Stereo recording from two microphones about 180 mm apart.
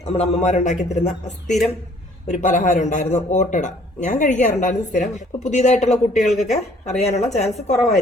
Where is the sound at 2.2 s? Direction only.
45° left (ahead or behind).